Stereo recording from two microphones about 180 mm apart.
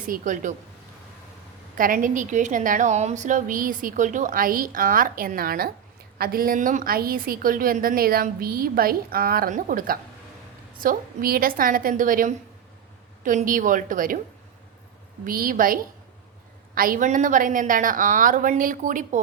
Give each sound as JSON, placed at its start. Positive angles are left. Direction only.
{"t": 0.1, "sound": "a woman's voice", "side_deg": -45}
{"t": 1.7, "sound": "a woman's voice", "side_deg": -50}
{"t": 15.2, "sound": "a woman's voice", "side_deg": -50}